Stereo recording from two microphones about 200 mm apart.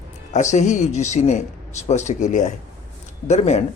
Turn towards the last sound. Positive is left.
turn(degrees=35)  # may be behind; listen again after turning